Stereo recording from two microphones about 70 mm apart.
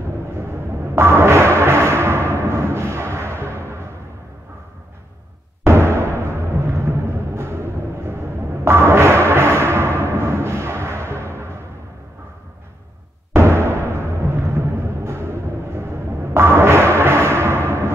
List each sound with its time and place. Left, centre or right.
0.9 s music: right
5.7 s timpani: right
8.6 s music: right
13.3 s music: right